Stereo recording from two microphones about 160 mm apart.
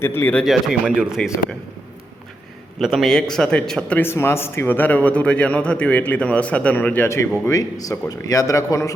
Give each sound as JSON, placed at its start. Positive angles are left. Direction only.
{"t": 0.0, "sound": "a man's voice", "side_deg": 15}
{"t": 0.4, "sound": "speech", "side_deg": 0}
{"t": 2.7, "sound": "a man's voice", "side_deg": 0}